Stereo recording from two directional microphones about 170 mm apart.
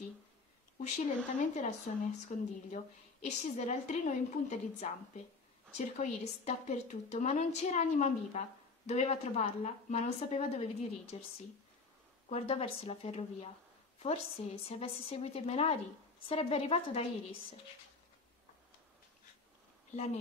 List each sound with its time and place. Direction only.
0.7 s a woman's voice: 45° left (ahead or behind)
12.3 s a woman's voice: 35° left (ahead or behind)